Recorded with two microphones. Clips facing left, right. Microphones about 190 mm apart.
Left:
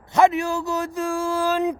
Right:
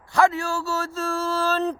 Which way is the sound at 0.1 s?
20° left (ahead or behind).